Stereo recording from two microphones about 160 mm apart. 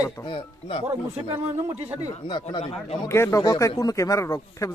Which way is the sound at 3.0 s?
15° left (ahead or behind).